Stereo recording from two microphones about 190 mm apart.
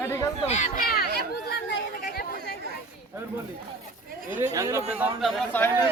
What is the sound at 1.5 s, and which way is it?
Chatter, 55° left (ahead or behind).